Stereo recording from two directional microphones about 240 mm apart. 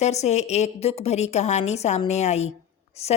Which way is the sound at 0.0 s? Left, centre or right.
Left.